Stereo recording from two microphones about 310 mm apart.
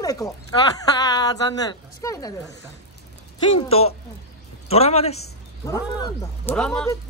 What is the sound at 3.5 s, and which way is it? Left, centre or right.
A man's voice, centre.